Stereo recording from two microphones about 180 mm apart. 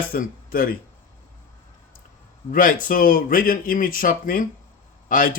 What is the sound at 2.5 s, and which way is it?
Speech, 50° left (ahead or behind).